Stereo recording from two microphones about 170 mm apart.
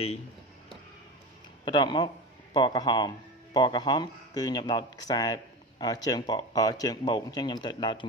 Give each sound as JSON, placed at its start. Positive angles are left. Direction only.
{"t": 1.6, "sound": "speech", "side_deg": 25}